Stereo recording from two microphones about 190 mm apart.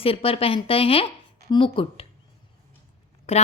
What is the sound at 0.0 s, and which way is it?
A woman's voice, 30° left (ahead or behind).